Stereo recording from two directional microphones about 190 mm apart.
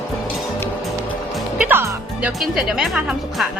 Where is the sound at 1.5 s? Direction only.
10° right (ahead or behind).